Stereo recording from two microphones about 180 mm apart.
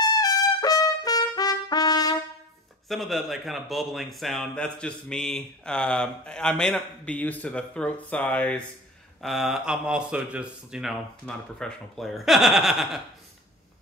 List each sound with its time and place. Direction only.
0.0 s trumpet: 20° left (ahead or behind)
2.9 s a man's voice: centre (ahead or behind)